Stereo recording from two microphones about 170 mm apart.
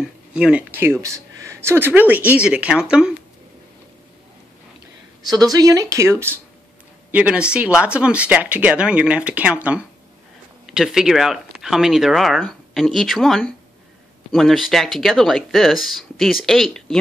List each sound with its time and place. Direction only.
0.0 s speech: 5° right (ahead or behind)
5.3 s a woman's voice: 20° right (ahead or behind); by 17.0 s 5° left (ahead or behind)